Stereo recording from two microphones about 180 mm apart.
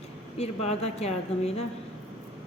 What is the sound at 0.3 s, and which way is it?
A woman's voice, 35° left (ahead or behind).